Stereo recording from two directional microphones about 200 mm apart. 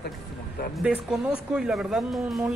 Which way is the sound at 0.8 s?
5° right (ahead or behind).